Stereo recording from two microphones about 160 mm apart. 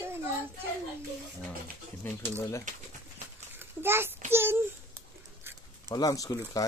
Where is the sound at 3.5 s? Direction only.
15° right (ahead or behind).